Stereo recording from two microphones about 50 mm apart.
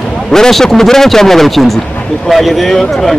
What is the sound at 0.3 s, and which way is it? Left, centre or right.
A man's voice, centre.